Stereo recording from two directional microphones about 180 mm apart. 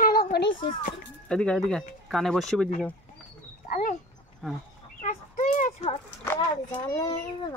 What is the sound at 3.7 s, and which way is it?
Dog, 45° left (ahead or behind).